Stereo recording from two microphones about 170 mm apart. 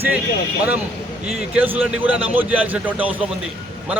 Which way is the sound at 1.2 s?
5° right (ahead or behind).